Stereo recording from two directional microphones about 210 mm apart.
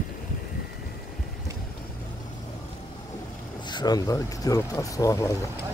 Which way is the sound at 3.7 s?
20° left (ahead or behind).